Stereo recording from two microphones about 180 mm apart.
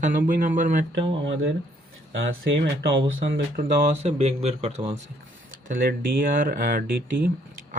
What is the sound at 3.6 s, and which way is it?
Speech, 40° right (ahead or behind).